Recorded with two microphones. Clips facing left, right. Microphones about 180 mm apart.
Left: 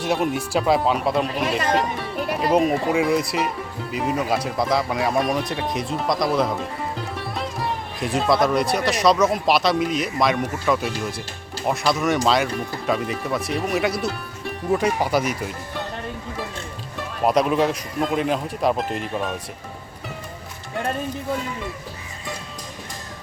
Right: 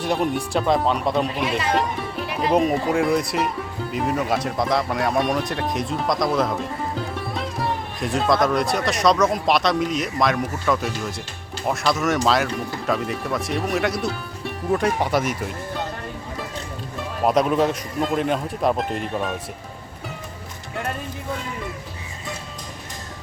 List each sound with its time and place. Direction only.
0.0 s speech: 5° left (ahead or behind)
1.5 s speech: 45° left (ahead or behind)
2.4 s speech: centre (ahead or behind)
17.2 s speech: centre (ahead or behind)